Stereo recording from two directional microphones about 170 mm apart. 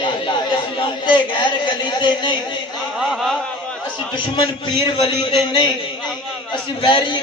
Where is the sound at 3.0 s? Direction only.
Centre (ahead or behind).